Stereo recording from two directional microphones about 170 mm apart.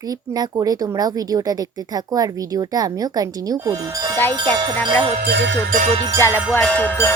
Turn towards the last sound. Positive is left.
turn(degrees=15)  # may be behind; listen again after turning